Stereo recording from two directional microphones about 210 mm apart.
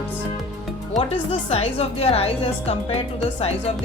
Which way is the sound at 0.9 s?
25° left (ahead or behind).